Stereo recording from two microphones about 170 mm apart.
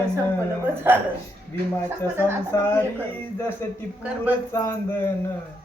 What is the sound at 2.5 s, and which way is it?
Speech, 15° left (ahead or behind).